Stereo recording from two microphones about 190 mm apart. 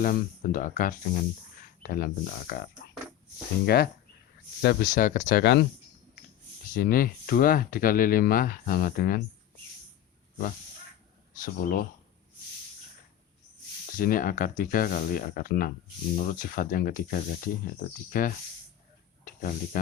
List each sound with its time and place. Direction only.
0.0 s speech: 45° left (ahead or behind)
1.6 s a sound: 50° left (ahead or behind)
2.5 s speech: 50° left (ahead or behind)
4.6 s speech: 50° left (ahead or behind)
5.4 s speech: 60° left (ahead or behind)
6.7 s speech: 50° left (ahead or behind)
11.3 s speech: 45° left (ahead or behind)
14.0 s speech: 50° left (ahead or behind)